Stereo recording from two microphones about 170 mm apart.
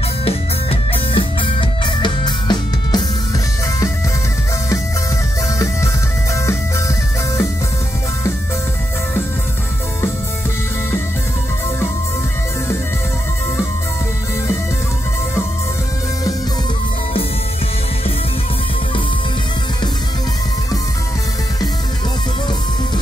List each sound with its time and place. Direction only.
0.2 s music: 35° left (ahead or behind)